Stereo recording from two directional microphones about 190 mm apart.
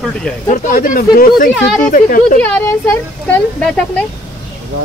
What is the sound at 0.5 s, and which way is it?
Speech, 45° left (ahead or behind).